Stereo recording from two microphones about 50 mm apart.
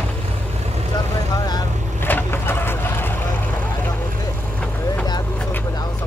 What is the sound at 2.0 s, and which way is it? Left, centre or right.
Vehicle, left.